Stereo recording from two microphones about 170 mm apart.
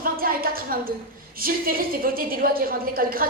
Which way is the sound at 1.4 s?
60° right (ahead or behind).